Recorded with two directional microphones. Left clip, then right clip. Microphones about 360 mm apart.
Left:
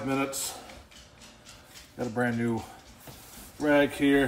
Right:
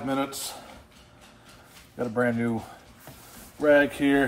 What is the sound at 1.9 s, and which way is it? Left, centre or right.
Speech, centre.